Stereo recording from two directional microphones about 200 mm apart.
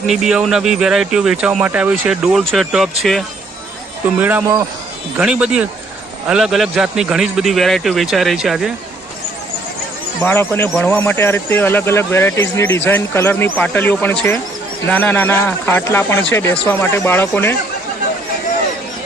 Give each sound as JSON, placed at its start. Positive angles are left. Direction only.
{"t": 0.1, "sound": "a man's voice", "side_deg": -5}
{"t": 10.2, "sound": "a man's voice", "side_deg": 10}